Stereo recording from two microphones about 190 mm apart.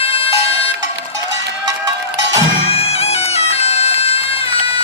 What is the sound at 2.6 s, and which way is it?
Music, 30° left (ahead or behind).